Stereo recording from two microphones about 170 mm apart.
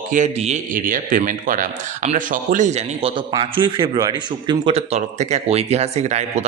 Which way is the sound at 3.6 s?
30° right (ahead or behind).